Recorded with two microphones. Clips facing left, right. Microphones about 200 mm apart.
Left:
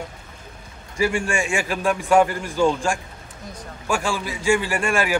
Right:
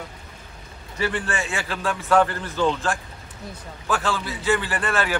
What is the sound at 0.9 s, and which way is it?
A man's voice, 10° left (ahead or behind).